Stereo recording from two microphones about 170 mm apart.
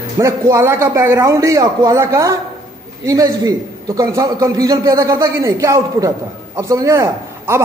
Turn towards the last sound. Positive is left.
turn(degrees=-15)  # may be behind; listen again after turning